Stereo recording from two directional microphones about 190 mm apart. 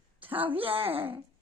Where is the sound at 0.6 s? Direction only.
30° right (ahead or behind).